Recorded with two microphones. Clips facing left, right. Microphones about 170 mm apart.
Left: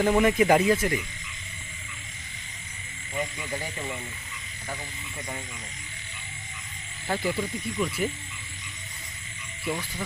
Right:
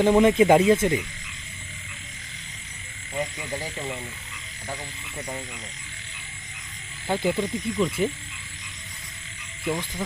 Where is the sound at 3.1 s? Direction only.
20° right (ahead or behind).